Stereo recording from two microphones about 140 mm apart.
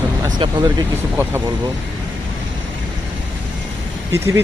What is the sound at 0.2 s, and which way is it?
Speech, 30° right (ahead or behind).